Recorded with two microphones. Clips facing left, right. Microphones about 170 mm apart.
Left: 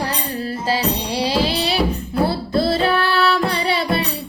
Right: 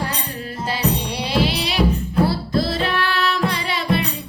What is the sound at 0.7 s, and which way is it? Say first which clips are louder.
Music: left 1 dB; 30° left (ahead or behind).